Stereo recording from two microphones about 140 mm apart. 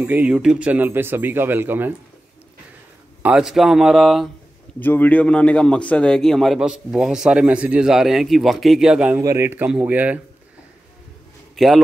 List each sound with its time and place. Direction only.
0.0 s speech: 10° right (ahead or behind)
3.2 s a man's voice: 10° right (ahead or behind)
4.7 s a man's voice: 15° left (ahead or behind); by 9.2 s 5° right (ahead or behind)
9.2 s speech: 20° right (ahead or behind)
11.5 s a man's voice: centre (ahead or behind)